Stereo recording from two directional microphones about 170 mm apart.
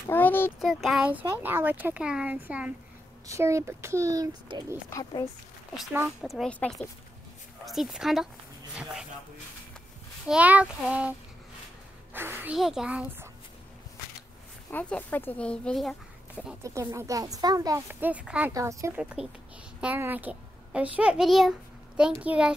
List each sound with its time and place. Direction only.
0.1 s a child's voice: 10° left (ahead or behind)
0.6 s a child's voice: centre (ahead or behind); by 4.7 s 25° right (ahead or behind)
4.8 s speech: 20° left (ahead or behind)
6.2 s a child's voice: centre (ahead or behind)
10.2 s speech: 5° right (ahead or behind)
12.1 s music: 10° right (ahead or behind)
12.5 s a child's voice: centre (ahead or behind)
14.7 s a child's voice: 10° left (ahead or behind)
16.6 s speech: 15° right (ahead or behind)
18.5 s speech: 20° right (ahead or behind)
18.9 s a child's voice: 5° right (ahead or behind)